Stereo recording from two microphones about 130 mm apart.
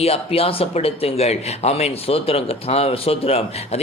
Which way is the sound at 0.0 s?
50° left (ahead or behind).